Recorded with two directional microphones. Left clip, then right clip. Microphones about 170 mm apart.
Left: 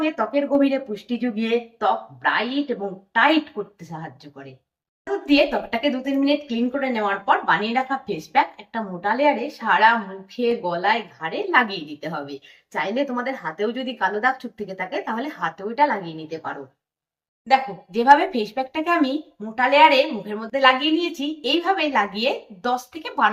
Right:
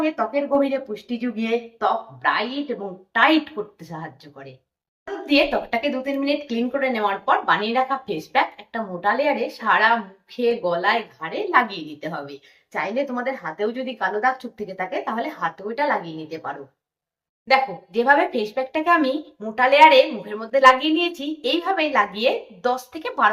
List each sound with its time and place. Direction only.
0.0 s a woman's voice: centre (ahead or behind)
17.5 s speech: 5° right (ahead or behind)